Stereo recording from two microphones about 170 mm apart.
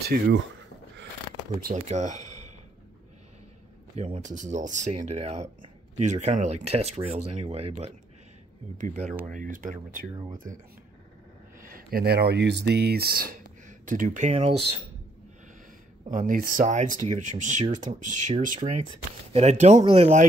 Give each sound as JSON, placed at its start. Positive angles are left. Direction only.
{"t": 0.0, "sound": "speech", "side_deg": -70}
{"t": 1.6, "sound": "speech", "side_deg": -50}
{"t": 3.9, "sound": "speech", "side_deg": -40}
{"t": 11.6, "sound": "speech", "side_deg": -60}
{"t": 12.7, "sound": "speech", "side_deg": -70}
{"t": 16.1, "sound": "speech", "side_deg": -50}